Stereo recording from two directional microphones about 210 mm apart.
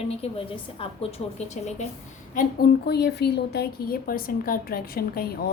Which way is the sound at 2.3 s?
45° left (ahead or behind).